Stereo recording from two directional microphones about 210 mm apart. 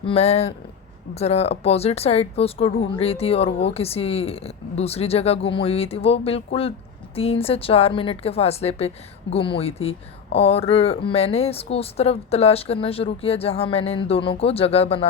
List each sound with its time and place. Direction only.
0.0 s speech: 30° left (ahead or behind)